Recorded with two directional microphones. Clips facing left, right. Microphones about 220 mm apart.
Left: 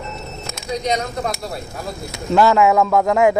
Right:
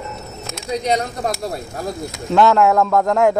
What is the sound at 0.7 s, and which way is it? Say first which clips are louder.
Speech: right 2 dB; 30° right (ahead or behind).